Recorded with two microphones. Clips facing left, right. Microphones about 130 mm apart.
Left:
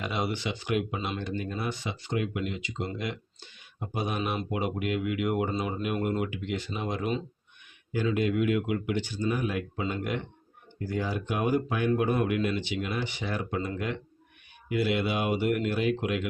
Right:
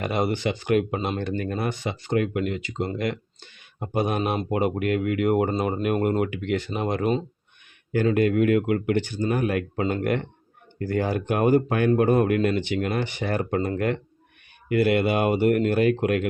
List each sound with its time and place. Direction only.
0.0 s speech: 50° right (ahead or behind)